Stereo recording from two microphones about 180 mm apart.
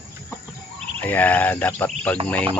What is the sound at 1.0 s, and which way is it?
Speech, 10° left (ahead or behind).